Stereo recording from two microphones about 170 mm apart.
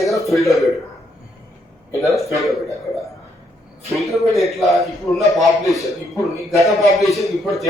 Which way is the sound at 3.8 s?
Centre (ahead or behind).